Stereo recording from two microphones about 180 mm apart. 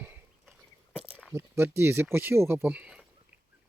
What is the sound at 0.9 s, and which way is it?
Speech, 5° right (ahead or behind).